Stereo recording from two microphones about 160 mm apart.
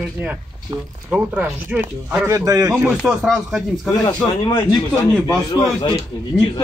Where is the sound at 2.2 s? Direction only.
20° right (ahead or behind).